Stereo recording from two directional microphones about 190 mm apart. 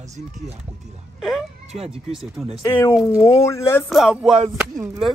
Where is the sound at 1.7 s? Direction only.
35° right (ahead or behind).